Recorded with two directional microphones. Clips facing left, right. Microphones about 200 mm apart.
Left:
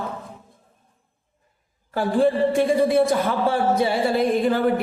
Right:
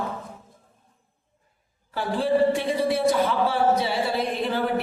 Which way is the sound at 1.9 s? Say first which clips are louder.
Left 4 dB; 50° left (ahead or behind).